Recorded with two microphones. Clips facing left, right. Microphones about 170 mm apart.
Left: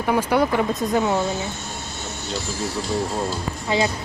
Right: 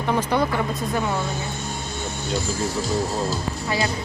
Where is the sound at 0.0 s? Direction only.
10° left (ahead or behind).